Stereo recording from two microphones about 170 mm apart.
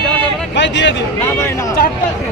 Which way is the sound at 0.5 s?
90° left.